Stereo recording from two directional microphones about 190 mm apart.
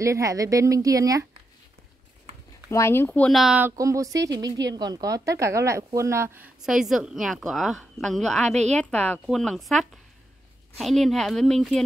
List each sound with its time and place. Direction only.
0.0 s a woman's voice: 15° right (ahead or behind)
2.7 s speech: 15° left (ahead or behind); by 3.7 s 5° right (ahead or behind)
3.7 s a woman's voice: 15° right (ahead or behind); by 11.8 s centre (ahead or behind)